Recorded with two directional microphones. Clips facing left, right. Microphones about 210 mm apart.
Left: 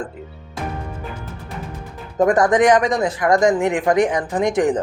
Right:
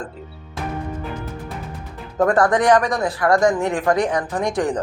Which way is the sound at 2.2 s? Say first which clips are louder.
Left 2 dB; 15° left (ahead or behind).